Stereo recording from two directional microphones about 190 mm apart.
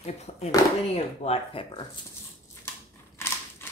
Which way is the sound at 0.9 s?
30° left (ahead or behind).